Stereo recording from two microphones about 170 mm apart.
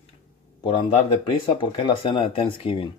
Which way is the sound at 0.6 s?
30° left (ahead or behind).